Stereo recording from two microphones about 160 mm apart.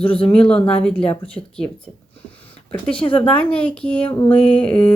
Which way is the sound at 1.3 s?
5° left (ahead or behind).